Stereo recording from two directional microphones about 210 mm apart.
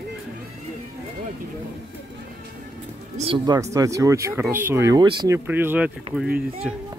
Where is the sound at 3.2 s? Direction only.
25° right (ahead or behind); by 6.8 s centre (ahead or behind).